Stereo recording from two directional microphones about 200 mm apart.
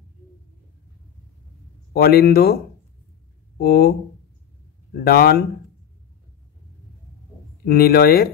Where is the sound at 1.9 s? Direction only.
50° left (ahead or behind).